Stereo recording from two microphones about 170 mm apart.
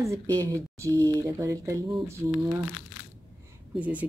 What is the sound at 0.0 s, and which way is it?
Speech, 15° right (ahead or behind).